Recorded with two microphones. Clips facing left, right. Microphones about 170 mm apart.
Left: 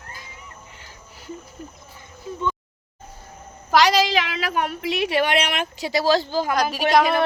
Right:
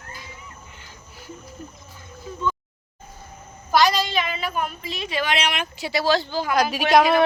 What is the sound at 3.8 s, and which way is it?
A woman's voice, 80° left.